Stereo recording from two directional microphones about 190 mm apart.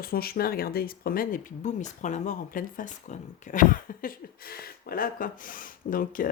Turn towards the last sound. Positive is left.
turn(degrees=45)  # may be behind; listen again after turning